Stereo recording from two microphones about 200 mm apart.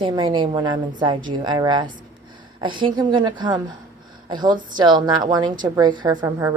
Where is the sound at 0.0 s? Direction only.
25° right (ahead or behind).